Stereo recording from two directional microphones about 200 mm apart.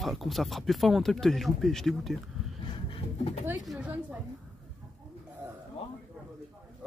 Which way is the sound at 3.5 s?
5° right (ahead or behind).